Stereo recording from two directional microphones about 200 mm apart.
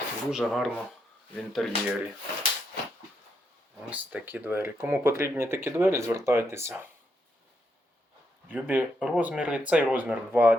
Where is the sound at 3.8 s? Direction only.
5° right (ahead or behind).